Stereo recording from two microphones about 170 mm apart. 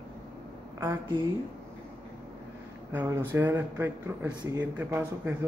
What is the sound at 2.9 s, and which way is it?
Speech, 15° right (ahead or behind).